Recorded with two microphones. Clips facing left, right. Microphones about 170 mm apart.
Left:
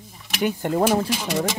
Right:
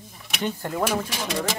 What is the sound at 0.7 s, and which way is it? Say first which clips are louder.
Speech: left 6 dB; 35° left (ahead or behind).